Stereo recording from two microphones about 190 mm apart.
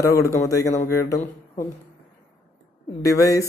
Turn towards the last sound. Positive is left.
turn(degrees=15)  # may be behind; listen again after turning